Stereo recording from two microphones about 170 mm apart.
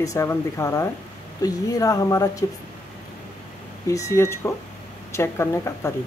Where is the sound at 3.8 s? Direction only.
20° left (ahead or behind).